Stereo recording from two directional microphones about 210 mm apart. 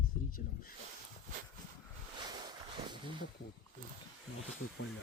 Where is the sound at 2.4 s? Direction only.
20° right (ahead or behind).